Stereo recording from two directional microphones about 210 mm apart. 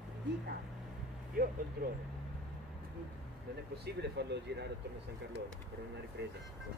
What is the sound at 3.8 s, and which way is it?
Speech, 50° right (ahead or behind).